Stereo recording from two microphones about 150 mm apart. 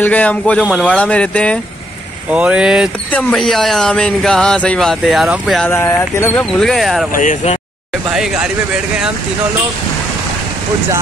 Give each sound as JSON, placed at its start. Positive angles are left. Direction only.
{"t": 0.0, "sound": "speech", "side_deg": 10}
{"t": 2.3, "sound": "speech", "side_deg": -5}
{"t": 3.1, "sound": "speech", "side_deg": 5}
{"t": 5.7, "sound": "speech", "side_deg": 15}
{"t": 6.6, "sound": "speech", "side_deg": 0}
{"t": 7.2, "sound": "speech", "side_deg": 60}
{"t": 8.1, "sound": "speech", "side_deg": -5}